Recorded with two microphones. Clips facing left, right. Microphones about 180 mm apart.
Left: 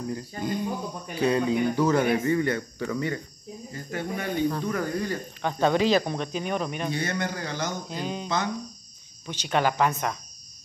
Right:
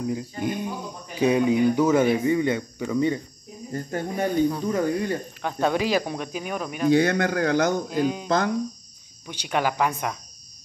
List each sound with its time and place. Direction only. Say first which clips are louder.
0.0 s speech: right 4 dB; 15° right (ahead or behind)
3.7 s speech: right 4 dB; 45° right (ahead or behind)
4.6 s speech: right 4 dB; 25° right (ahead or behind)
5.4 s speech: left 2 dB; 5° right (ahead or behind)
6.9 s speech: right 9 dB; 70° right (ahead or behind); by 8.0 s 50° right (ahead or behind)
8.0 s speech: right 7 dB; 5° right (ahead or behind)
9.3 s speech: even; 10° right (ahead or behind)